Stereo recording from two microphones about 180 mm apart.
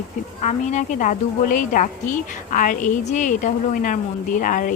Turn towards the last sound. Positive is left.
turn(degrees=50)  # may be behind; listen again after turning